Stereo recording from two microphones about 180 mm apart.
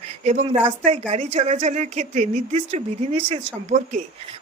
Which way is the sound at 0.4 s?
30° right (ahead or behind).